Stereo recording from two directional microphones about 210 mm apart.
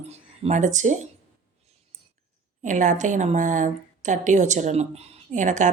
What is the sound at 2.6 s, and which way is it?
Speech, 35° right (ahead or behind).